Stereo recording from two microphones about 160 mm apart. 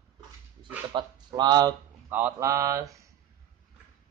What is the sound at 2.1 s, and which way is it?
Speech, 15° right (ahead or behind).